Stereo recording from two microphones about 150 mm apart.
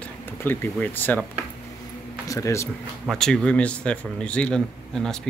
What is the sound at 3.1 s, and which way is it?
A man's voice, 5° left (ahead or behind).